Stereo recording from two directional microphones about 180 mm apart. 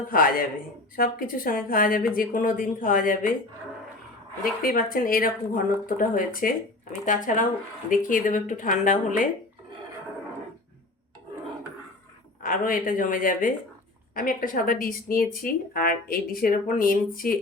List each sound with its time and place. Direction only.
0.1 s speech: 50° left (ahead or behind)
4.6 s speech: 50° left (ahead or behind)
12.4 s speech: 50° left (ahead or behind)